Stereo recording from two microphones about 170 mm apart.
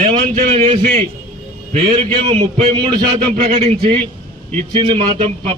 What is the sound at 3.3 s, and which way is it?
A man's voice, 45° right (ahead or behind).